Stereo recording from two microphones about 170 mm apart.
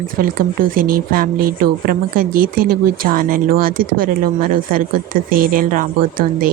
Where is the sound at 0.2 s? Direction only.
55° right (ahead or behind).